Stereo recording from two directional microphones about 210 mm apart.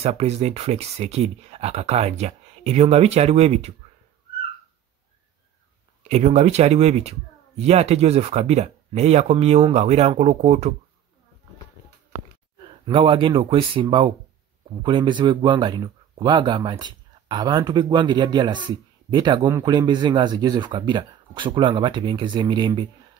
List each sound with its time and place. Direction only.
0.0 s speech: 30° right (ahead or behind)
6.0 s speech: 30° right (ahead or behind)
12.8 s speech: 25° right (ahead or behind)